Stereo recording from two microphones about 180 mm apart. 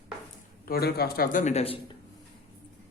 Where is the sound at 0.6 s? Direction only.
60° left (ahead or behind); by 1.8 s 35° left (ahead or behind).